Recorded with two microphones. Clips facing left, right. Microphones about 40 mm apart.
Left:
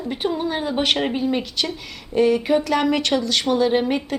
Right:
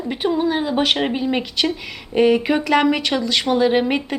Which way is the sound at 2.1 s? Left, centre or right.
Right.